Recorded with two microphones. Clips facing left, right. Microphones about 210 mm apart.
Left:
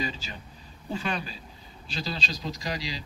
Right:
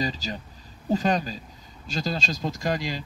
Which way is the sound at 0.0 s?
40° right (ahead or behind).